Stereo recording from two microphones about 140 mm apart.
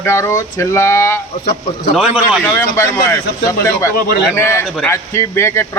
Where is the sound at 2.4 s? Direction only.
15° left (ahead or behind).